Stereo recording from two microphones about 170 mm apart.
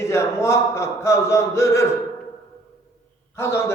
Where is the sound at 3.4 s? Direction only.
15° left (ahead or behind).